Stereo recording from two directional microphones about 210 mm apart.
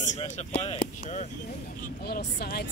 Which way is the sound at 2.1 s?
50° left (ahead or behind).